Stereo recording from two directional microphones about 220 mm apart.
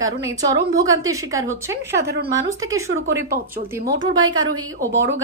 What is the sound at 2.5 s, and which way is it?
Speech, 15° right (ahead or behind).